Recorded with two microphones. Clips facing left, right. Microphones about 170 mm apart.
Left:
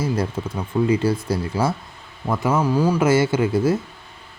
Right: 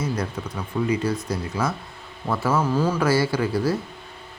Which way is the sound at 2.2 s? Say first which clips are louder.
Left 2 dB; 15° left (ahead or behind).